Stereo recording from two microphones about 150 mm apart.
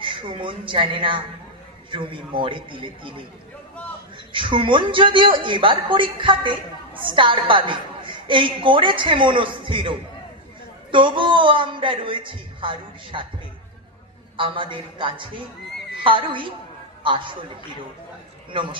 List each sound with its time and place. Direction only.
0.0 s a woman's voice: 35° right (ahead or behind)
4.3 s a woman's voice: 35° right (ahead or behind)
14.3 s a woman's voice: 35° right (ahead or behind)
18.5 s a woman's voice: 35° right (ahead or behind)